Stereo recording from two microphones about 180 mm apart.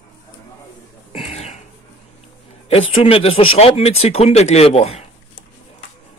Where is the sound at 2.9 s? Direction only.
30° left (ahead or behind).